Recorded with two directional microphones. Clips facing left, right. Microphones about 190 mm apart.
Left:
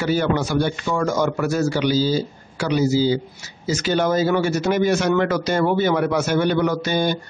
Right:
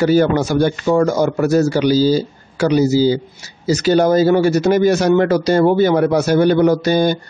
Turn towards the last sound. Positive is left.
turn(degrees=-35)  # may be behind; listen again after turning